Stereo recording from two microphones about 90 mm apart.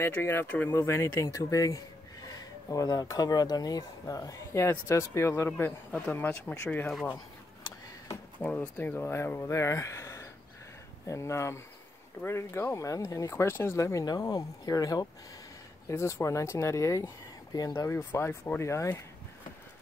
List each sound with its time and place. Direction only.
0.0 s speech: 25° left (ahead or behind)
0.7 s speech: 30° left (ahead or behind)
8.4 s speech: 20° left (ahead or behind); by 14.0 s 35° left (ahead or behind)
14.0 s speech: 45° left (ahead or behind)
15.9 s speech: 30° left (ahead or behind)